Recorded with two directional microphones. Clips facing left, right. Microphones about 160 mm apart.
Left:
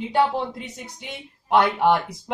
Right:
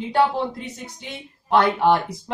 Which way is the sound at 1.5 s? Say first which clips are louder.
Right 1 dB; 15° left (ahead or behind).